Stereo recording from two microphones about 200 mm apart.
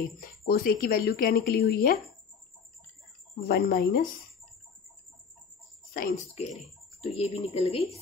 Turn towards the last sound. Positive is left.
turn(degrees=30)  # may be behind; listen again after turning